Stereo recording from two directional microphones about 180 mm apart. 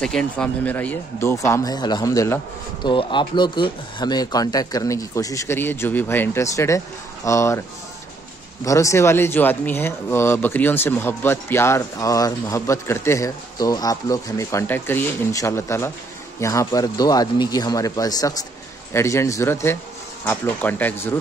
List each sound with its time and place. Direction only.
0.0 s speech: 5° left (ahead or behind)
2.8 s speech: 25° left (ahead or behind)
8.6 s a man's voice: 15° left (ahead or behind)